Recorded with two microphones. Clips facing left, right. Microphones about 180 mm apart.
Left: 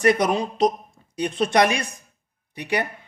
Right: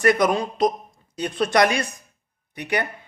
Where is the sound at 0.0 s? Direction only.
25° left (ahead or behind).